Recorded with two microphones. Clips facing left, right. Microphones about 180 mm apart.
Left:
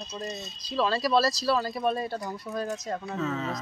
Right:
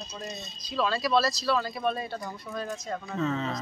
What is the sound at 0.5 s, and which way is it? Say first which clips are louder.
Speech: left 2 dB; 30° left (ahead or behind).